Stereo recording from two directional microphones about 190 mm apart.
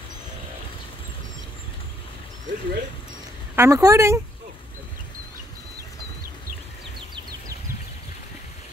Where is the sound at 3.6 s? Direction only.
15° right (ahead or behind).